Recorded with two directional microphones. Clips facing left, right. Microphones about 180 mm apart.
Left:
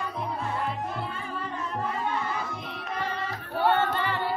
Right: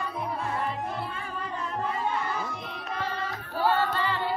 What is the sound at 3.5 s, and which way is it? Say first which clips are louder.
Music: left 1 dB; 20° left (ahead or behind).